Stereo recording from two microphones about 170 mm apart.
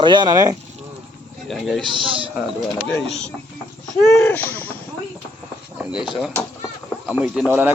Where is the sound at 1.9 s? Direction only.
30° right (ahead or behind).